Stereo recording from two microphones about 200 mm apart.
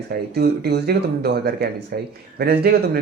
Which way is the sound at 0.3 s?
55° right (ahead or behind).